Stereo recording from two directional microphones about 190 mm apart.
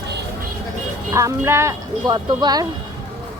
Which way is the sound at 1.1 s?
15° right (ahead or behind).